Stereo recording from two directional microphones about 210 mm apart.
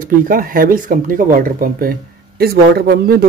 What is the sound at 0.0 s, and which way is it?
Speech, 40° right (ahead or behind).